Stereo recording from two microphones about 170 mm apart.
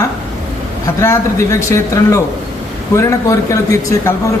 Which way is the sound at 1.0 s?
15° left (ahead or behind).